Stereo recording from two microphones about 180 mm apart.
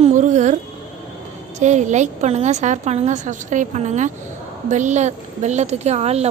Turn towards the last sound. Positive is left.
turn(degrees=-35)  # may be behind; listen again after turning